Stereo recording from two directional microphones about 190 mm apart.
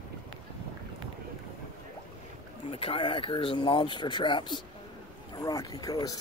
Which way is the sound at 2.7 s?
30° left (ahead or behind).